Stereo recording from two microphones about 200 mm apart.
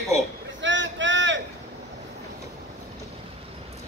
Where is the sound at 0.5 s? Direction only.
65° right (ahead or behind).